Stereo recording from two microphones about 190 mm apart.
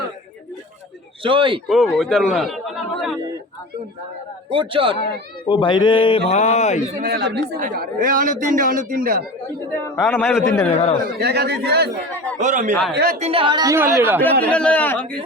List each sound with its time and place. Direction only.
1.2 s speech: 25° right (ahead or behind)
1.6 s speech: centre (ahead or behind)
4.5 s speech: 25° right (ahead or behind)
5.5 s a man's voice: 25° left (ahead or behind)
7.0 s speech: 60° right (ahead or behind)
7.6 s speech: 50° right (ahead or behind)
9.9 s a man's voice: 10° left (ahead or behind)
10.7 s speech: 35° left (ahead or behind)
11.0 s speech: 55° right (ahead or behind)
12.4 s a man's voice: 40° right (ahead or behind)
12.9 s speech: 55° right (ahead or behind)
13.1 s speech: 30° right (ahead or behind); by 14.2 s 10° right (ahead or behind)
14.5 s a man's voice: 5° left (ahead or behind)